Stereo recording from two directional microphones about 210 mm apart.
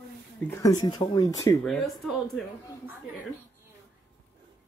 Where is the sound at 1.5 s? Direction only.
Centre (ahead or behind).